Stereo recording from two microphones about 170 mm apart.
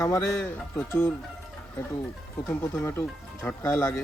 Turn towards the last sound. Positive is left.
turn(degrees=15)  # may be behind; listen again after turning